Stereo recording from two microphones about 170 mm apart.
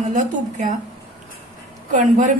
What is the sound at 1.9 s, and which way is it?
Speech, 45° right (ahead or behind).